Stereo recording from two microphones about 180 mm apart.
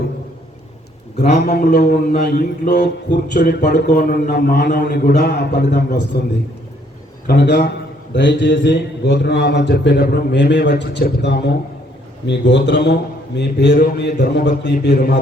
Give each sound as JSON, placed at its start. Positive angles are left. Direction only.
{"t": 1.1, "sound": "a man's voice", "side_deg": 40}
{"t": 1.4, "sound": "a man's voice", "side_deg": 60}
{"t": 7.3, "sound": "a man's voice", "side_deg": 70}
{"t": 14.9, "sound": "a man's voice", "side_deg": 55}